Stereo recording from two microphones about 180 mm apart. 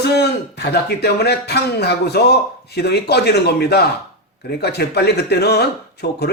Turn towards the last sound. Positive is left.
turn(degrees=65)  # may be behind; listen again after turning